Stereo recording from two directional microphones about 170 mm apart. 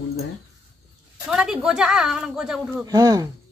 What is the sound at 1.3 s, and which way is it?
Speech, 5° right (ahead or behind).